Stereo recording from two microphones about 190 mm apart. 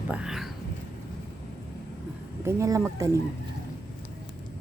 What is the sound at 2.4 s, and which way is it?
Speech, 15° right (ahead or behind).